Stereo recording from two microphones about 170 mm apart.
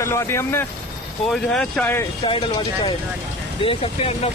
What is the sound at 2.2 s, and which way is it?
Speech, 30° left (ahead or behind).